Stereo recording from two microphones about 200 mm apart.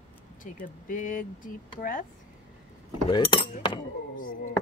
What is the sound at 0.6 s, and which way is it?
Speech, 40° left (ahead or behind).